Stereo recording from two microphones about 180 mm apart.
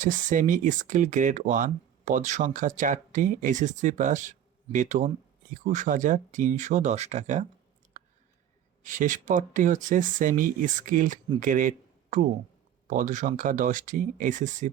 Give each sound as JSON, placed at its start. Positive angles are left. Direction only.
{"t": 0.0, "sound": "speech", "side_deg": -45}
{"t": 8.8, "sound": "speech", "side_deg": -45}